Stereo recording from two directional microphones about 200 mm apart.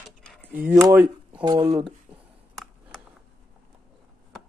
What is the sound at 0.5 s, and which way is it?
Speech, 10° right (ahead or behind).